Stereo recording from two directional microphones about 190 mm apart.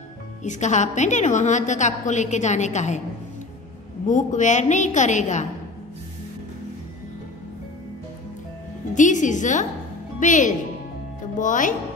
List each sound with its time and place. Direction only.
0.4 s a woman's voice: 40° left (ahead or behind)
4.1 s a woman's voice: 40° left (ahead or behind)
8.9 s a woman's voice: 40° left (ahead or behind)